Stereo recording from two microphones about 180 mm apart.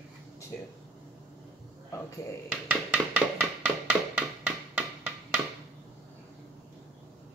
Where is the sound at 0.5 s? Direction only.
5° left (ahead or behind).